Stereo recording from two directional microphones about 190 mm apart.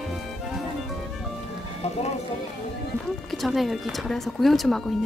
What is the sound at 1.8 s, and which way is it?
Speech, 35° left (ahead or behind).